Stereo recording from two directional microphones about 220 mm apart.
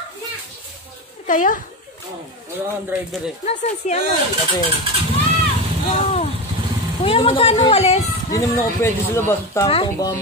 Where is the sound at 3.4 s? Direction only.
30° left (ahead or behind).